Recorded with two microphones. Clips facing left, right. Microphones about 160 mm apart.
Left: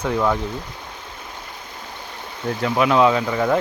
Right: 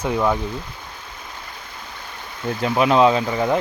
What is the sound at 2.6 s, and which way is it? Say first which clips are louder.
Speech: right 1 dB; 20° right (ahead or behind).